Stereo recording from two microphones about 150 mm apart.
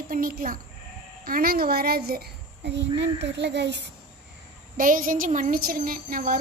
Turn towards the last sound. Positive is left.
turn(degrees=-65)  # may be behind; listen again after turning